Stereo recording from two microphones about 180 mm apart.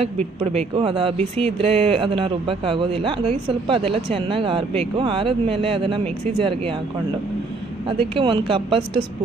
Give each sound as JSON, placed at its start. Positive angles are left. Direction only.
{"t": 0.4, "sound": "speech", "side_deg": -35}
{"t": 8.0, "sound": "speech", "side_deg": -30}